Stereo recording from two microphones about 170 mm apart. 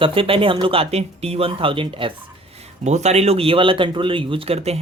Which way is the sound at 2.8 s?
40° right (ahead or behind).